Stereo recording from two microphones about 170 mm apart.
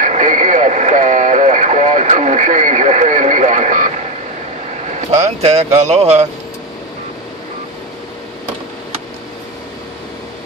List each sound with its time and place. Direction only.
0.0 s radio: 50° right (ahead or behind)
5.1 s speech: 40° right (ahead or behind)